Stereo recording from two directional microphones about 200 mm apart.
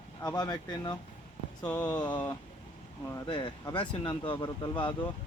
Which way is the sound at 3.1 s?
20° left (ahead or behind).